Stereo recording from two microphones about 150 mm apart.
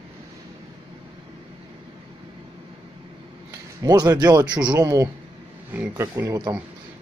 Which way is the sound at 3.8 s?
25° right (ahead or behind).